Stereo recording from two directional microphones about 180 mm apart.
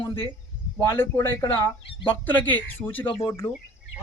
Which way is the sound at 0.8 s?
10° left (ahead or behind).